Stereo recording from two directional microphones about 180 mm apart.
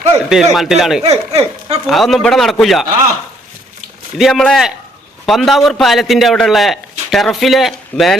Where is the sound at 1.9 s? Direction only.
Centre (ahead or behind).